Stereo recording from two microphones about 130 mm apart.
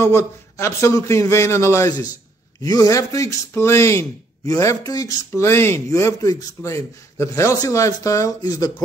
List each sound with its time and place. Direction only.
0.0 s speech: 20° left (ahead or behind)